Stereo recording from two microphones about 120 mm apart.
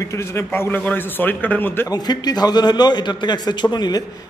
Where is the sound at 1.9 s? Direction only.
35° left (ahead or behind).